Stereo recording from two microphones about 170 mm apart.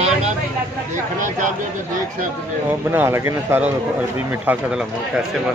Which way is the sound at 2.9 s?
15° right (ahead or behind).